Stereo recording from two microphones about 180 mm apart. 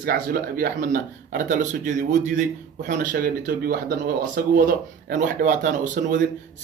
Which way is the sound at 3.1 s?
55° right (ahead or behind).